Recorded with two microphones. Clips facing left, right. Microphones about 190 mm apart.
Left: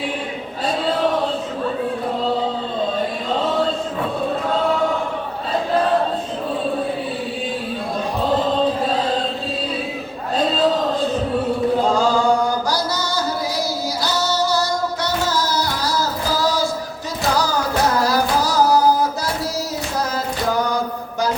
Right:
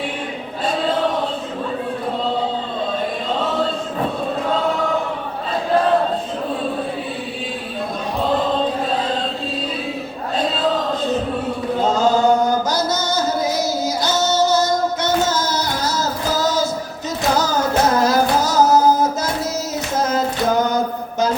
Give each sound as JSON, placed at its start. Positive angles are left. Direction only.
{"t": 11.9, "sound": "singing", "side_deg": -20}
{"t": 17.3, "sound": "music", "side_deg": -20}
{"t": 20.0, "sound": "mantra", "side_deg": -20}